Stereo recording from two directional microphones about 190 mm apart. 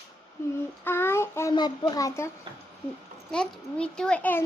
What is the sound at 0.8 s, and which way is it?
A child's voice, 10° left (ahead or behind).